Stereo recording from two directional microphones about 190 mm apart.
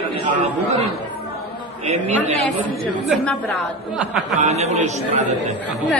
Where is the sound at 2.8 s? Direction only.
Centre (ahead or behind).